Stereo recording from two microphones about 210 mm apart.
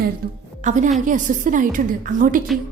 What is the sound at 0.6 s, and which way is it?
A woman's voice, 35° right (ahead or behind).